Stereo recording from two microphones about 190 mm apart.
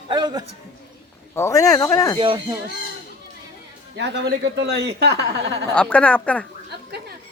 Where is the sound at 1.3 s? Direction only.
15° left (ahead or behind).